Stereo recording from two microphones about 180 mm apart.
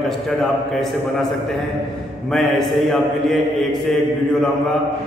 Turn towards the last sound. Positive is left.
turn(degrees=0)  # may be behind; listen again after turning